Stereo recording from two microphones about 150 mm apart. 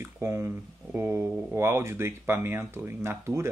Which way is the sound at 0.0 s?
15° right (ahead or behind).